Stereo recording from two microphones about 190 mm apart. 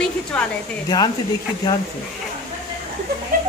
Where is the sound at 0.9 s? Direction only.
20° left (ahead or behind).